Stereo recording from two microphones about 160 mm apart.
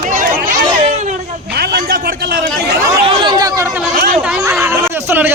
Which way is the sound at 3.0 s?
30° right (ahead or behind).